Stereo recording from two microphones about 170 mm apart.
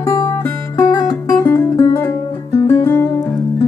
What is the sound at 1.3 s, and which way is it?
Music, 15° left (ahead or behind).